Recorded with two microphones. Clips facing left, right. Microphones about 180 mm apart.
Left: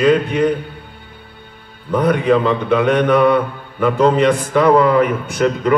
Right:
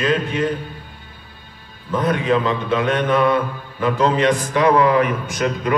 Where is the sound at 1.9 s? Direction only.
60° left (ahead or behind).